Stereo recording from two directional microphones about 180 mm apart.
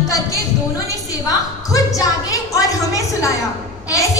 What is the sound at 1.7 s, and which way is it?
A woman's voice, 20° left (ahead or behind).